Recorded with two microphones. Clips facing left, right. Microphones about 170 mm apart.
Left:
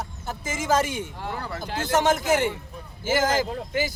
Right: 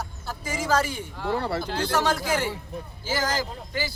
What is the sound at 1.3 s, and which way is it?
Speech, 30° right (ahead or behind).